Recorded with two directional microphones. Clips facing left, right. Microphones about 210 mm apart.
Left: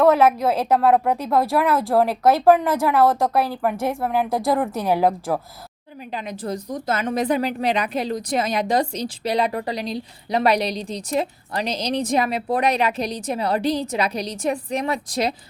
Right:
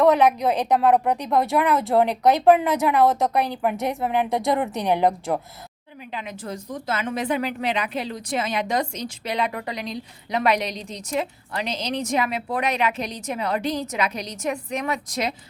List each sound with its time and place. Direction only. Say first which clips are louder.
0.0 s a woman's voice: left 1 dB; centre (ahead or behind)
6.1 s a woman's voice: left 5 dB; 35° left (ahead or behind)